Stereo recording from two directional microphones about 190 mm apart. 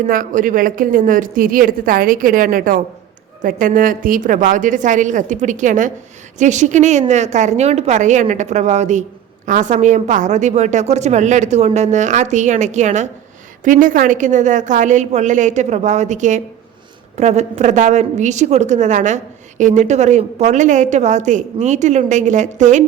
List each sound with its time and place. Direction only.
0.1 s a woman's voice: 45° right (ahead or behind)